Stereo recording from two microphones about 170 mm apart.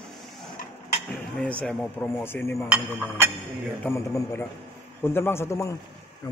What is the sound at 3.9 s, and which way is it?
Speech, 15° left (ahead or behind).